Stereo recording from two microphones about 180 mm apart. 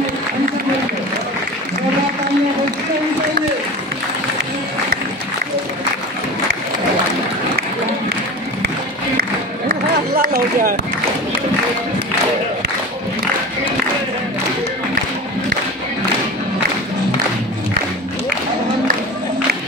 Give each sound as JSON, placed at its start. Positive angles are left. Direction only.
{"t": 9.7, "sound": "run", "side_deg": -60}